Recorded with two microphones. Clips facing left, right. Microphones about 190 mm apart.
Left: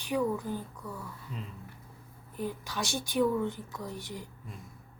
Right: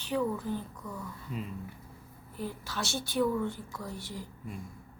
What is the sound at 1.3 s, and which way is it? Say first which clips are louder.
Speech: right 5 dB; 5° right (ahead or behind).